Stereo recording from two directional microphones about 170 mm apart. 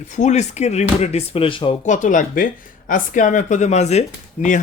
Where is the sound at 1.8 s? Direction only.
45° left (ahead or behind).